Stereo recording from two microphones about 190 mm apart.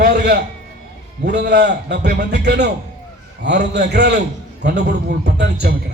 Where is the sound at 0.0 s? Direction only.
60° right (ahead or behind).